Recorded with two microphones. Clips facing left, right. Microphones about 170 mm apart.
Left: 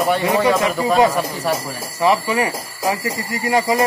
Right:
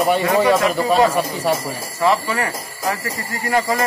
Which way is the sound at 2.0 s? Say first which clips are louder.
Left 2 dB; 15° left (ahead or behind).